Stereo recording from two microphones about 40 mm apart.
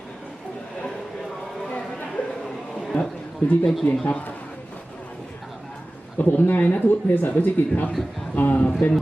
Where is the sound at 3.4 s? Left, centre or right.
Left.